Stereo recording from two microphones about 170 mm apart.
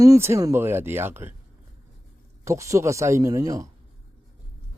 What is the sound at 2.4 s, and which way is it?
Speech, 15° right (ahead or behind).